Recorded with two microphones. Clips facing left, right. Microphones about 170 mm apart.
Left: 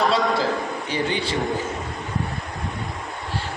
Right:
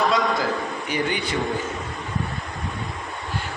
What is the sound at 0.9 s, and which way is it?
Speech, 30° left (ahead or behind).